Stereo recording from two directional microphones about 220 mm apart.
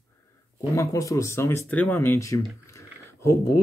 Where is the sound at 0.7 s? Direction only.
15° left (ahead or behind).